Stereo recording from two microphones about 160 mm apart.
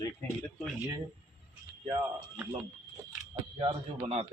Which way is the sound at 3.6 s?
35° right (ahead or behind).